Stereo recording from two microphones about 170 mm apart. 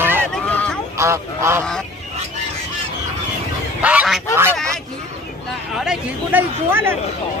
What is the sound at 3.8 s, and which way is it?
Goose, 5° right (ahead or behind).